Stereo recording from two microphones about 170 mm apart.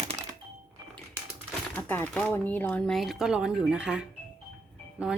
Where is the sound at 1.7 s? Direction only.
10° left (ahead or behind).